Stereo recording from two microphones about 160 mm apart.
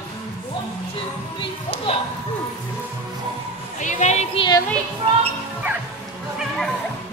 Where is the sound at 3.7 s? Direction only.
50° left (ahead or behind).